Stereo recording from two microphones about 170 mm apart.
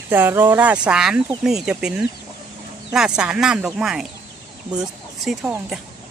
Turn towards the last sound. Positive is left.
turn(degrees=-5)  # may be behind; listen again after turning